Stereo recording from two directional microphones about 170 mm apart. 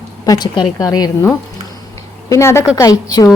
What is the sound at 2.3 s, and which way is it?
A woman's voice, 15° left (ahead or behind).